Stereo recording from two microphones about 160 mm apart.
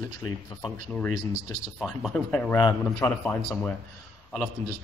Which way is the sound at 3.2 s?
Centre (ahead or behind).